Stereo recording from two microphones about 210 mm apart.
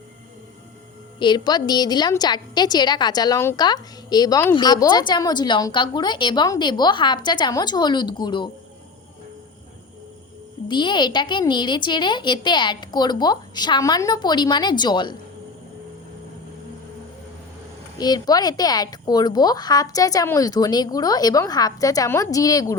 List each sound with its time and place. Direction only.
1.2 s a woman's voice: 20° left (ahead or behind)
10.7 s a woman's voice: 20° left (ahead or behind)
17.9 s a woman's voice: 20° left (ahead or behind)